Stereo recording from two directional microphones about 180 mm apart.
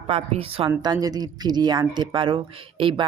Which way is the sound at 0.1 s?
30° right (ahead or behind).